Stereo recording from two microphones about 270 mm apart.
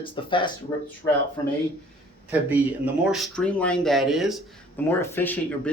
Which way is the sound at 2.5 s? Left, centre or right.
Centre.